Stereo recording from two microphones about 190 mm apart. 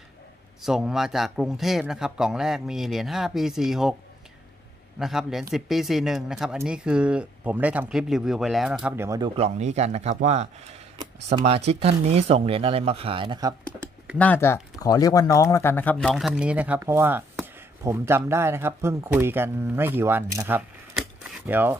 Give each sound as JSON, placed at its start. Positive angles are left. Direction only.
{"t": 0.6, "sound": "speech", "side_deg": 0}
{"t": 4.9, "sound": "speech", "side_deg": 0}
{"t": 9.4, "sound": "speech", "side_deg": -35}
{"t": 14.1, "sound": "speech", "side_deg": 10}